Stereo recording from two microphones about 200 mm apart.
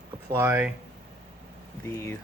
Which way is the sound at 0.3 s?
15° right (ahead or behind).